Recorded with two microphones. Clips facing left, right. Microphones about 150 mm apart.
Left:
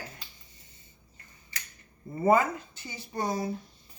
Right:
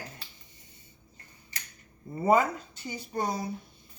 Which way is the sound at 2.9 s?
15° right (ahead or behind).